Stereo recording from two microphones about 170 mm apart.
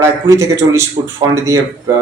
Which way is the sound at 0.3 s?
15° right (ahead or behind).